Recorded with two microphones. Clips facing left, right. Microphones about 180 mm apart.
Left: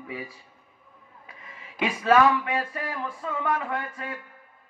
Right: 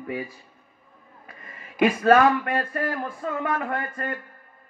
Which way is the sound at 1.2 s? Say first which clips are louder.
Right 2 dB; 55° right (ahead or behind).